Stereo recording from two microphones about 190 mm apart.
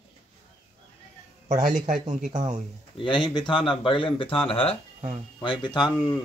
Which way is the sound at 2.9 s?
25° left (ahead or behind).